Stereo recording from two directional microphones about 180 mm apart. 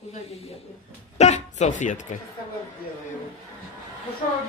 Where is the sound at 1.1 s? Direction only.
40° left (ahead or behind).